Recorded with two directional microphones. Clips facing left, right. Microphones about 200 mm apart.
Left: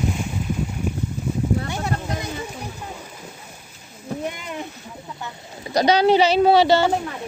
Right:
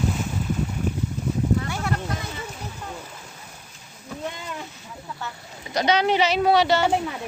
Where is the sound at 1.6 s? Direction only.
20° left (ahead or behind).